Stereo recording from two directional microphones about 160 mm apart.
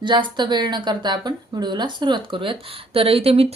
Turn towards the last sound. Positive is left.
turn(degrees=-40)  # may be behind; listen again after turning